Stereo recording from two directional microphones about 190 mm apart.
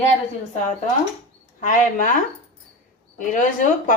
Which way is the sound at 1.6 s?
45° left (ahead or behind).